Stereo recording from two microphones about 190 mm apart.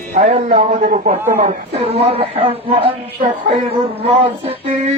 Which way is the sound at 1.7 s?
30° right (ahead or behind).